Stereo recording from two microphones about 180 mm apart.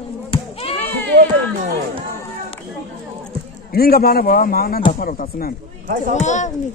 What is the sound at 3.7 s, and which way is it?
A man's voice, 60° left (ahead or behind).